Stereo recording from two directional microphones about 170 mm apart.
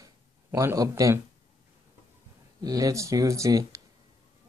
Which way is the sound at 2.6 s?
20° right (ahead or behind).